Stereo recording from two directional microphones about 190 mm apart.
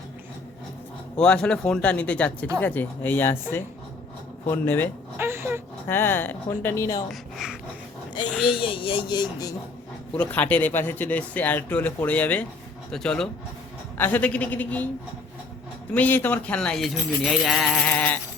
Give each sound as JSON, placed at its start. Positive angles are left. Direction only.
{"t": 1.1, "sound": "speech", "side_deg": 5}
{"t": 4.4, "sound": "speech", "side_deg": 10}
{"t": 5.1, "sound": "speech", "side_deg": -10}
{"t": 5.9, "sound": "speech", "side_deg": 10}
{"t": 7.1, "sound": "speech", "side_deg": 0}
{"t": 8.5, "sound": "speech", "side_deg": 30}
{"t": 10.2, "sound": "speech", "side_deg": 10}
{"t": 15.9, "sound": "speech", "side_deg": 10}